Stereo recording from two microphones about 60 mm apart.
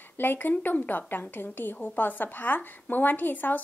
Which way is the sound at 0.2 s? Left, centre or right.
Left.